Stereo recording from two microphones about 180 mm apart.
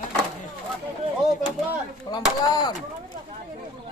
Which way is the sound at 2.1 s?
25° left (ahead or behind).